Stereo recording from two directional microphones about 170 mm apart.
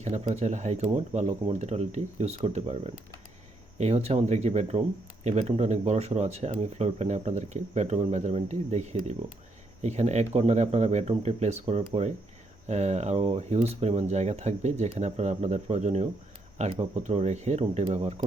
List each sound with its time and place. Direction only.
0.0 s speech: 40° right (ahead or behind)